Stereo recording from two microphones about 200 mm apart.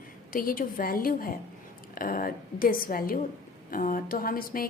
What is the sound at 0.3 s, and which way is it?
A woman's voice, 45° left (ahead or behind).